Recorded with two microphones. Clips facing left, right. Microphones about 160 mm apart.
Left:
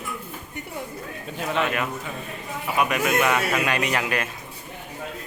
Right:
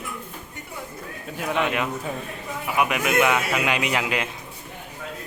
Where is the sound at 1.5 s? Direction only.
15° right (ahead or behind).